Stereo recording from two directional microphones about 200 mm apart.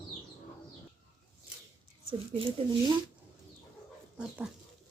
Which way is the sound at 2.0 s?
25° right (ahead or behind).